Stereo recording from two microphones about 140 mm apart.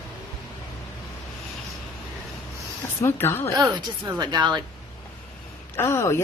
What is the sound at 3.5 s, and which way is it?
Speech, 25° right (ahead or behind).